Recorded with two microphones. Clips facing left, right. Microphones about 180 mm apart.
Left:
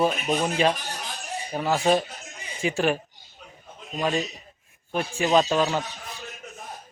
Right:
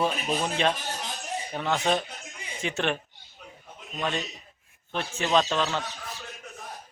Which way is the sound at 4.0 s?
5° left (ahead or behind).